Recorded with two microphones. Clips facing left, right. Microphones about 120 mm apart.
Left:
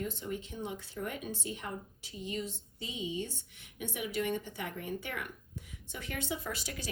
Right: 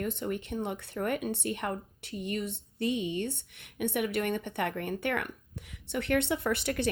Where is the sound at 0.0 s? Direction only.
60° right (ahead or behind).